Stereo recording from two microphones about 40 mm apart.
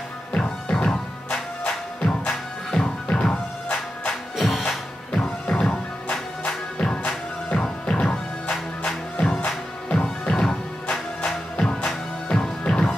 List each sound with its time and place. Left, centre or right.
0.3 s music: left
3.6 s music: left
4.4 s music: centre
5.1 s music: left
7.0 s music: left